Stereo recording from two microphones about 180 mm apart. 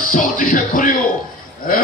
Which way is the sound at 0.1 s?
45° left (ahead or behind).